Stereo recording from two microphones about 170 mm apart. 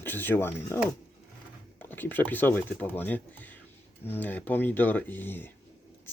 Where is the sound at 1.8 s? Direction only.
10° left (ahead or behind).